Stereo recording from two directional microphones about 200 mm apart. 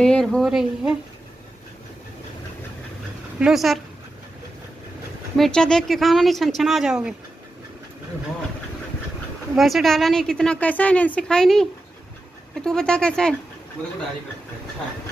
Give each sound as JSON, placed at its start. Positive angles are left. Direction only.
{"t": 0.0, "sound": "a woman's voice", "side_deg": 5}
{"t": 3.3, "sound": "a woman's voice", "side_deg": 0}
{"t": 5.4, "sound": "a woman's voice", "side_deg": 5}
{"t": 9.6, "sound": "a woman's voice", "side_deg": 0}
{"t": 12.6, "sound": "a woman's voice", "side_deg": 5}